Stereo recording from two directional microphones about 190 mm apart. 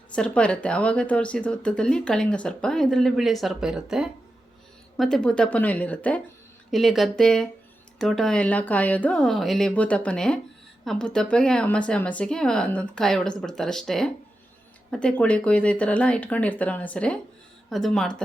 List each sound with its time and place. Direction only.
0.1 s speech: 5° left (ahead or behind)